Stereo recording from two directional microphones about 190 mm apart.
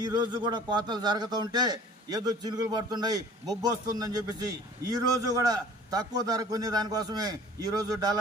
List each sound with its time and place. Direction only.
0.0 s a man's voice: 20° right (ahead or behind)